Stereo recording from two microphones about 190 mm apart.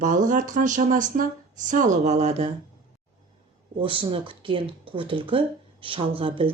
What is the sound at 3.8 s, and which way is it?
Speech, 25° right (ahead or behind).